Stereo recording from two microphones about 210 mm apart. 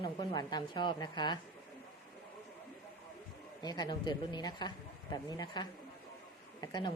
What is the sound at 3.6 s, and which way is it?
Speech, 20° left (ahead or behind).